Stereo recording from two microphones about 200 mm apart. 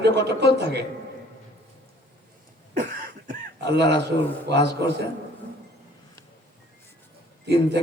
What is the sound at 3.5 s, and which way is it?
Speech, 60° right (ahead or behind).